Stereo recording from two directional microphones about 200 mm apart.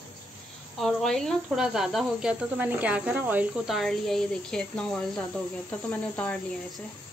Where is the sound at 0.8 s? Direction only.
Centre (ahead or behind).